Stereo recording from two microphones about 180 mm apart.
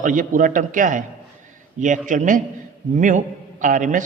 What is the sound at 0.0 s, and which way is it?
A man's voice, 50° right (ahead or behind).